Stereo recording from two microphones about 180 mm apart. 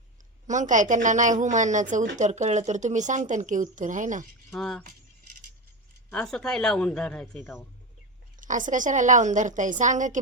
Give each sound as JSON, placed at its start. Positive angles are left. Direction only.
{"t": 0.4, "sound": "speech", "side_deg": -45}
{"t": 4.5, "sound": "speech", "side_deg": 0}
{"t": 6.1, "sound": "speech", "side_deg": 5}
{"t": 8.4, "sound": "speech", "side_deg": -45}